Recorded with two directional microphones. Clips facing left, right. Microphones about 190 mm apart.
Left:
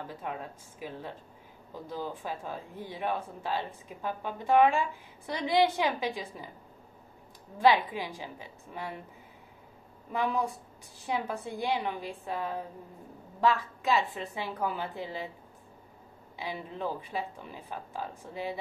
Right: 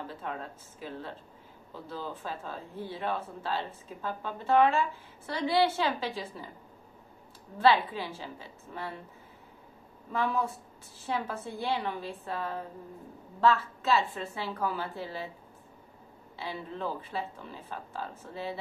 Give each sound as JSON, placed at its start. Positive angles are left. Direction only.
{"t": 0.1, "sound": "speech", "side_deg": 15}
{"t": 7.5, "sound": "speech", "side_deg": 15}
{"t": 10.1, "sound": "speech", "side_deg": 15}
{"t": 16.3, "sound": "speech", "side_deg": 15}